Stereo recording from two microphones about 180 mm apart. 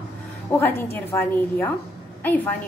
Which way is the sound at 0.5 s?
10° left (ahead or behind).